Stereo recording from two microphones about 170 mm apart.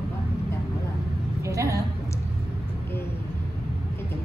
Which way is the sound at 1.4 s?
20° right (ahead or behind).